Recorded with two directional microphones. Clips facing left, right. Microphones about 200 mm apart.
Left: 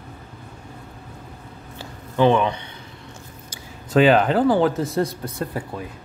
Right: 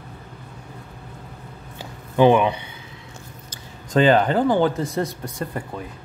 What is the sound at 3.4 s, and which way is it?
Speech, 5° left (ahead or behind).